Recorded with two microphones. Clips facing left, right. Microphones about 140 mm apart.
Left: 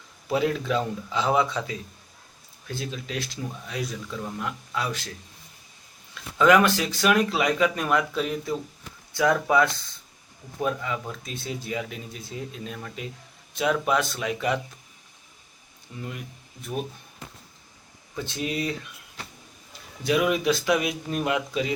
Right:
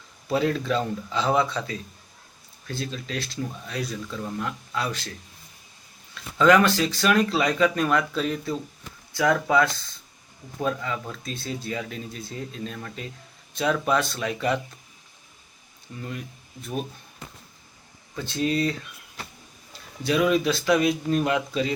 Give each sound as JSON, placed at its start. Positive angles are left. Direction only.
{"t": 0.3, "sound": "speech", "side_deg": 10}
{"t": 6.3, "sound": "speech", "side_deg": 10}
{"t": 16.0, "sound": "speech", "side_deg": 10}
{"t": 18.2, "sound": "speech", "side_deg": 15}
{"t": 20.1, "sound": "speech", "side_deg": 15}